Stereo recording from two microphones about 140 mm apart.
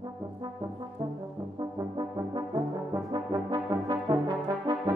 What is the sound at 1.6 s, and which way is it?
Brass instrument, 25° right (ahead or behind).